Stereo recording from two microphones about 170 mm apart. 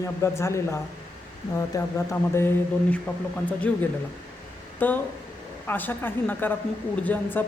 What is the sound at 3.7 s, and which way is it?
A woman's voice, 5° left (ahead or behind).